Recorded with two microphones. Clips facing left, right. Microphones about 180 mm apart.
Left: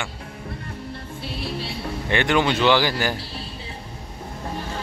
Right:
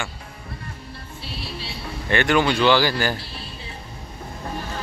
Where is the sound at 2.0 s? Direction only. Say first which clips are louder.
Right 1 dB; 20° left (ahead or behind).